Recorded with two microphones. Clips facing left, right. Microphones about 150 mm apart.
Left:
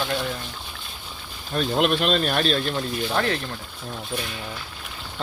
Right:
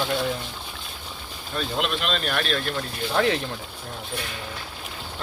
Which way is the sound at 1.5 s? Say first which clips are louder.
Left 6 dB; 45° left (ahead or behind).